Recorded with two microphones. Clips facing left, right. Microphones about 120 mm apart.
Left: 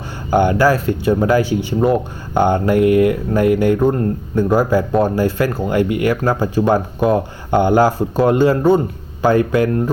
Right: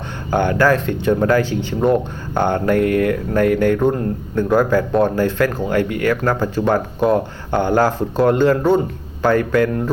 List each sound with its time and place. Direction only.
0.3 s speech: 10° left (ahead or behind)